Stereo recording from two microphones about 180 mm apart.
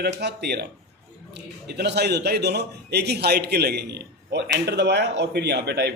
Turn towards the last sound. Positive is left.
turn(degrees=-65)  # may be behind; listen again after turning